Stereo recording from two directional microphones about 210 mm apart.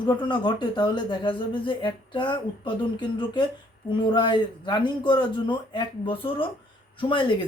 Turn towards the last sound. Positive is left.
turn(degrees=25)  # may be behind; listen again after turning